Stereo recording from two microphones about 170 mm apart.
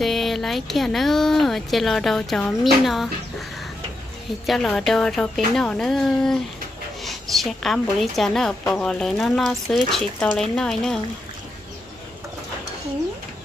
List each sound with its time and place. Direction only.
0.0 s a woman's voice: centre (ahead or behind)
4.5 s a woman's voice: centre (ahead or behind)